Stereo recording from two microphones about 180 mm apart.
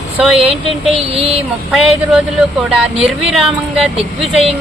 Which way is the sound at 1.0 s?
35° right (ahead or behind).